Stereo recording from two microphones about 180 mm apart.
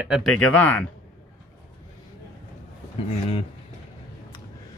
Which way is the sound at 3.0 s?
30° left (ahead or behind).